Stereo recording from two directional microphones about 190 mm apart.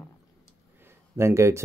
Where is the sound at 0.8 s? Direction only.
15° right (ahead or behind).